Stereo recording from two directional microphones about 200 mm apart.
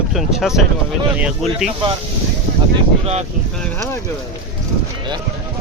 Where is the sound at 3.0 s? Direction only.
30° right (ahead or behind).